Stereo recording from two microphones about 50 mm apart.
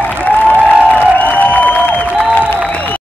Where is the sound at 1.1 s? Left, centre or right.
Left.